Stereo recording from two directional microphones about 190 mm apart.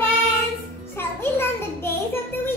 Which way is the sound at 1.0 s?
10° left (ahead or behind).